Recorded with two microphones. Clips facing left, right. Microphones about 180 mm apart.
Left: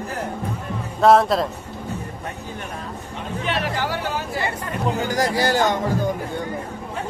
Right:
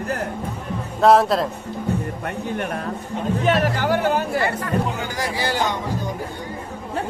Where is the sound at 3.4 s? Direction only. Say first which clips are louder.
Right 4 dB; 45° right (ahead or behind).